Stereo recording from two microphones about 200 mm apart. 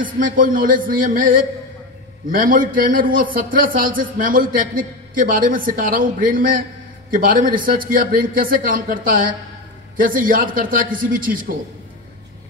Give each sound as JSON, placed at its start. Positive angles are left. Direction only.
{"t": 0.0, "sound": "a man's voice", "side_deg": -45}